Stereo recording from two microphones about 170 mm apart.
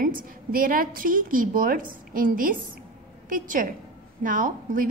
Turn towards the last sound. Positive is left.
turn(degrees=-50)  # may be behind; listen again after turning